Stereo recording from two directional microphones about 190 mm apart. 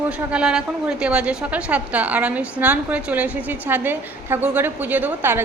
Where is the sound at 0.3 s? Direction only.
5° right (ahead or behind).